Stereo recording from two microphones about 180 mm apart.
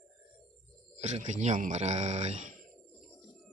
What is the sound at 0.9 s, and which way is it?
Speech, 40° right (ahead or behind).